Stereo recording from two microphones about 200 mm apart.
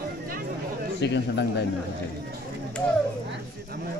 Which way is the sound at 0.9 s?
60° left (ahead or behind).